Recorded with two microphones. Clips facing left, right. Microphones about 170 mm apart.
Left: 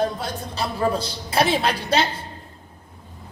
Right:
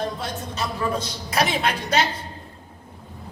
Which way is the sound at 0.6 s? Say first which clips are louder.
Left 3 dB; 30° left (ahead or behind).